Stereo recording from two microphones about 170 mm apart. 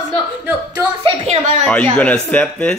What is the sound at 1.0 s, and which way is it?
Speech, 35° right (ahead or behind).